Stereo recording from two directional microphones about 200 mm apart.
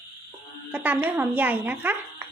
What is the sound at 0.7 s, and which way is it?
A woman's voice, 10° right (ahead or behind).